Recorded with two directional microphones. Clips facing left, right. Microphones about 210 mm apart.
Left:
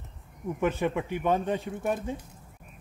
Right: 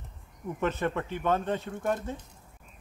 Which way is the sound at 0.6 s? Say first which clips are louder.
Left 2 dB; 10° left (ahead or behind).